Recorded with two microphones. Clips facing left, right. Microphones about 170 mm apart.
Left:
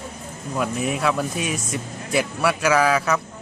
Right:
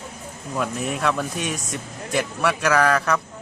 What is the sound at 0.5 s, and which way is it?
Speech, 5° left (ahead or behind).